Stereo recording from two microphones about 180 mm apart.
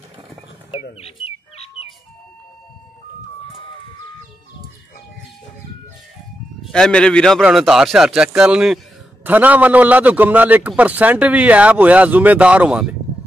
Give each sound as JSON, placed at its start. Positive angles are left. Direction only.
{"t": 1.0, "sound": "bird", "side_deg": 35}
{"t": 6.6, "sound": "a man's voice", "side_deg": 5}